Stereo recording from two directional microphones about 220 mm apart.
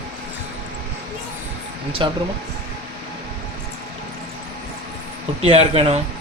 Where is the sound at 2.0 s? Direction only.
20° right (ahead or behind).